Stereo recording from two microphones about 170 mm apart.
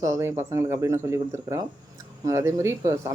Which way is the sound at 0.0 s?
15° right (ahead or behind).